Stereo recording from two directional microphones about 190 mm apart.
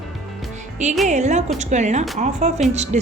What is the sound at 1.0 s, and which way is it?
Speech, 40° right (ahead or behind).